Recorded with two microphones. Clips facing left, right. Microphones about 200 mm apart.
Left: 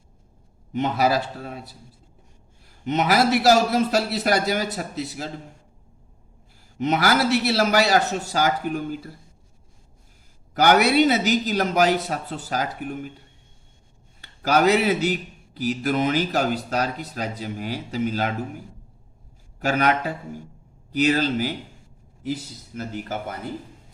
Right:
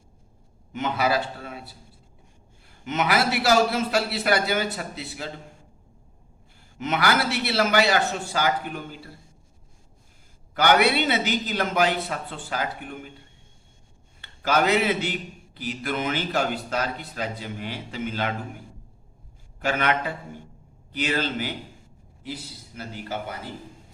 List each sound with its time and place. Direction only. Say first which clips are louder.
0.7 s a man's voice: left 3 dB; 40° left (ahead or behind)
2.8 s a man's voice: left 4 dB; 35° left (ahead or behind)
6.7 s a man's voice: left 3 dB; 40° left (ahead or behind)
10.5 s a man's voice: left 3 dB; 45° left (ahead or behind)
14.2 s a man's voice: left 3 dB; 40° left (ahead or behind)
19.5 s a man's voice: left 3 dB; 40° left (ahead or behind)